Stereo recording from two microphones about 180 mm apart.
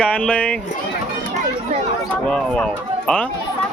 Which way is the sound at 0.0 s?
5° left (ahead or behind).